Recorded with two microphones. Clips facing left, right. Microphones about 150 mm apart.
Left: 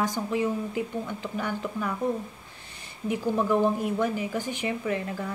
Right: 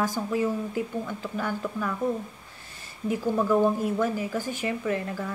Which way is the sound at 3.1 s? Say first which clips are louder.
Right 1 dB; 15° left (ahead or behind).